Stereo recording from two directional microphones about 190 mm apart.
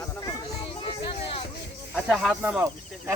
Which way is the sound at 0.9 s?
30° left (ahead or behind).